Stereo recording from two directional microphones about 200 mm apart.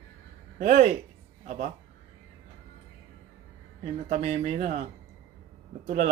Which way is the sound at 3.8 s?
35° right (ahead or behind).